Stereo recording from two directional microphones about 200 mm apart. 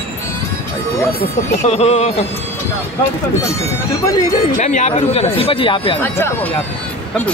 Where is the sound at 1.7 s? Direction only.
30° left (ahead or behind).